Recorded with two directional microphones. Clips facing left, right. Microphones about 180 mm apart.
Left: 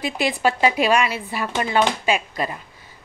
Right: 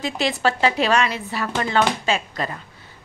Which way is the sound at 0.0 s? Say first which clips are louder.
Left 1 dB; 10° left (ahead or behind).